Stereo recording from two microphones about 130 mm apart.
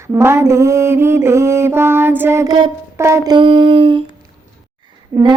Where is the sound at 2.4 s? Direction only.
35° right (ahead or behind).